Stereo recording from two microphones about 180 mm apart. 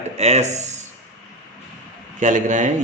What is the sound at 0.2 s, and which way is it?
Speech, 35° right (ahead or behind).